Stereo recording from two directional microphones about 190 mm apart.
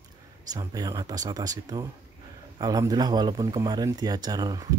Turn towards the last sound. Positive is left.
turn(degrees=-20)  # may be behind; listen again after turning